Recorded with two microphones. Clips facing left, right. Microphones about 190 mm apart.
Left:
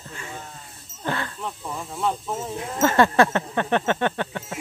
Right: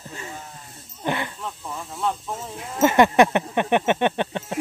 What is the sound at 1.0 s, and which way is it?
Snake, 15° right (ahead or behind).